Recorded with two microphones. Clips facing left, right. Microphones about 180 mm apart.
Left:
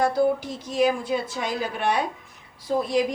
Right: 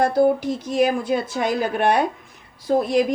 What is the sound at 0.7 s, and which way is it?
A woman's voice, 55° right (ahead or behind).